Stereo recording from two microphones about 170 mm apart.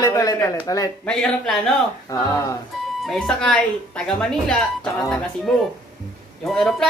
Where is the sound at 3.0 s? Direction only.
5° left (ahead or behind).